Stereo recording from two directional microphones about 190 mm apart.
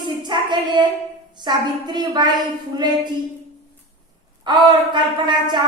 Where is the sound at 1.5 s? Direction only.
20° right (ahead or behind).